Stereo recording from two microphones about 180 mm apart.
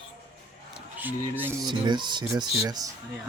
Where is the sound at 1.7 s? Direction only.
25° right (ahead or behind).